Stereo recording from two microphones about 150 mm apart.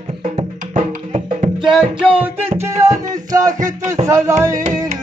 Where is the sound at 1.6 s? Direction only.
5° right (ahead or behind).